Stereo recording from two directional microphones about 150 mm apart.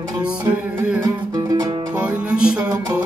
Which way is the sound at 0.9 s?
20° right (ahead or behind).